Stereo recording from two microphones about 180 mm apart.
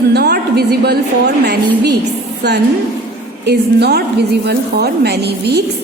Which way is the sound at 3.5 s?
65° right (ahead or behind).